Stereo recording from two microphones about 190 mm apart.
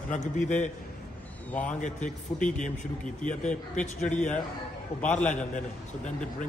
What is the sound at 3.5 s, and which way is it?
Speech, 5° left (ahead or behind).